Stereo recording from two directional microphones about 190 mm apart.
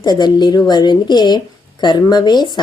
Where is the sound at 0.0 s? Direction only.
20° left (ahead or behind).